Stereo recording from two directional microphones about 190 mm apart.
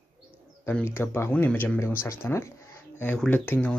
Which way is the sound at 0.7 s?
10° left (ahead or behind).